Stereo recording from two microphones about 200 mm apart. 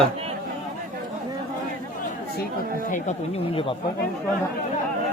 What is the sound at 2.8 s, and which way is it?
Speech, 40° left (ahead or behind).